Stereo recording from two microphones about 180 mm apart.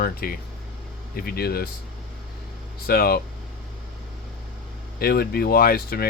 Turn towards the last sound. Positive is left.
turn(degrees=55)  # may be behind; listen again after turning